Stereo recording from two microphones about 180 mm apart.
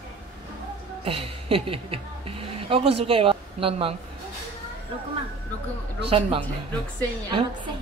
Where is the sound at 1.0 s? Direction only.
30° right (ahead or behind).